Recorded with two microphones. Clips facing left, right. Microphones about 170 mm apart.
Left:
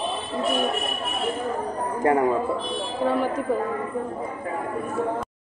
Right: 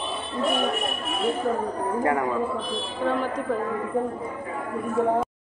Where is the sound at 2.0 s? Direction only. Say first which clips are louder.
Left 5 dB; 25° left (ahead or behind).